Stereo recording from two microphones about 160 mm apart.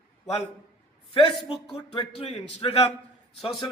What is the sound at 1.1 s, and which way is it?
Speech, 35° left (ahead or behind).